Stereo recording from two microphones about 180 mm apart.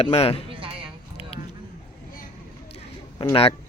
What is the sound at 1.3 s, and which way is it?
Keys jangling, 35° left (ahead or behind).